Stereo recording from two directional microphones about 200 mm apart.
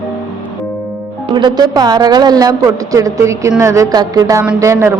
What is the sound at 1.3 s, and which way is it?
A woman's voice, 20° right (ahead or behind).